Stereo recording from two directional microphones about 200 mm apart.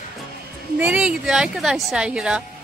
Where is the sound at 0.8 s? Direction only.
5° right (ahead or behind).